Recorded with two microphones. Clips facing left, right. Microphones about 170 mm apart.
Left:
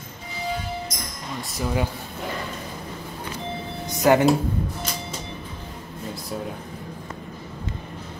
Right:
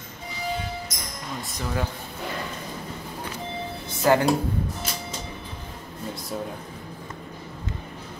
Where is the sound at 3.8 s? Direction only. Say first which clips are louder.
Left 3 dB; 15° left (ahead or behind).